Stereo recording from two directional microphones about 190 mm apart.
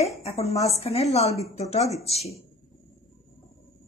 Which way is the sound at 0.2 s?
35° left (ahead or behind).